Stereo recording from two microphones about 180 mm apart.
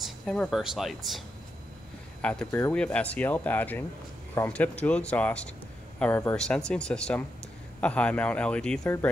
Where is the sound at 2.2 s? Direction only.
5° left (ahead or behind).